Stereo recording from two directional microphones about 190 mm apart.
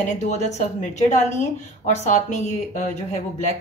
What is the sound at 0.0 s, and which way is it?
Speech, 35° left (ahead or behind).